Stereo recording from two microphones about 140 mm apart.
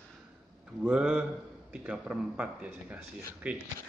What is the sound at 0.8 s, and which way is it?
Speech, 5° right (ahead or behind).